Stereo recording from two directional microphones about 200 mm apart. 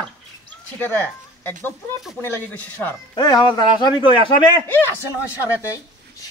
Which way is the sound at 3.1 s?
20° left (ahead or behind).